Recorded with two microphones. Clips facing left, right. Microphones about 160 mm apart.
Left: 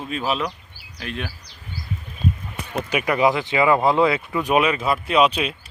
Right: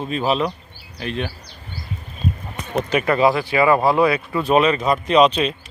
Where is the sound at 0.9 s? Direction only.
5° left (ahead or behind).